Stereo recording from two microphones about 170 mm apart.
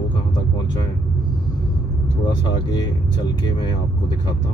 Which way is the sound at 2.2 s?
25° left (ahead or behind).